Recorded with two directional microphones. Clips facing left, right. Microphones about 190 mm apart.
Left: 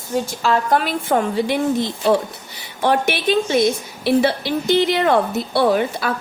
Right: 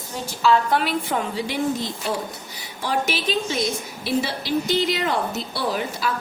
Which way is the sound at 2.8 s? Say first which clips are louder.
Left 6 dB; 60° left (ahead or behind).